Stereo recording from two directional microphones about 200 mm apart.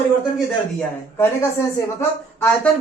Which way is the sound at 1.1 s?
15° left (ahead or behind).